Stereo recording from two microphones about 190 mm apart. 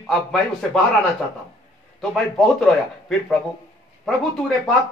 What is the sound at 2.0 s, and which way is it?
Speech, centre (ahead or behind).